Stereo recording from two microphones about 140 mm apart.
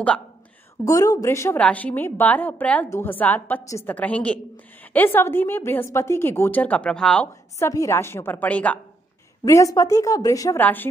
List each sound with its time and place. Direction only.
0.8 s a woman's voice: 25° left (ahead or behind); by 7.2 s 5° left (ahead or behind)
7.5 s a woman's voice: 25° left (ahead or behind)
9.4 s a woman's voice: 25° left (ahead or behind)
10.6 s a woman's voice: 15° left (ahead or behind)